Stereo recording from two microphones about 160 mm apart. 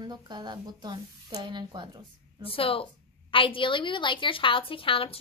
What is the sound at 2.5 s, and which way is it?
A woman's voice, 35° left (ahead or behind).